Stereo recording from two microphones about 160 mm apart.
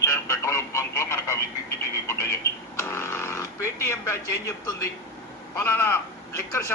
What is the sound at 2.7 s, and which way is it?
Speech, 15° left (ahead or behind).